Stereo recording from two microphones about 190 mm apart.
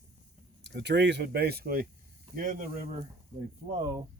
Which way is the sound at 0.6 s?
65° right (ahead or behind).